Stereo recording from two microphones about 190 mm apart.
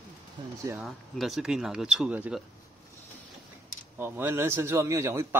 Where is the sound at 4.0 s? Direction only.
10° right (ahead or behind).